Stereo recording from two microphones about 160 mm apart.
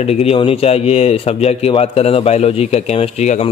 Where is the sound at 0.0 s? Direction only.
40° left (ahead or behind).